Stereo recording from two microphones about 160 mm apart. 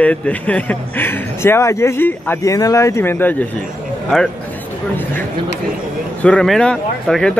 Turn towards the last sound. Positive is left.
turn(degrees=5)  # may be behind; listen again after turning